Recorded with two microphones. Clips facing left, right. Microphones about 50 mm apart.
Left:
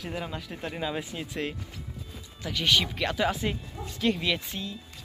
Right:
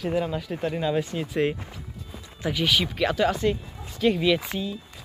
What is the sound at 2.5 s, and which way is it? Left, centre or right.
Speech, centre.